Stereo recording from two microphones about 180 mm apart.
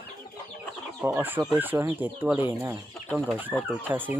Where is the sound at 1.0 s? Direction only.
10° right (ahead or behind).